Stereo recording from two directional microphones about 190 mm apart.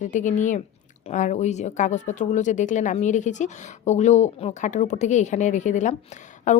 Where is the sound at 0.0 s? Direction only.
40° left (ahead or behind).